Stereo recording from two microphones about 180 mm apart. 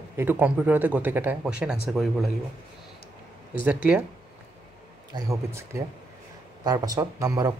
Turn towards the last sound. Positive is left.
turn(degrees=-20)  # may be behind; listen again after turning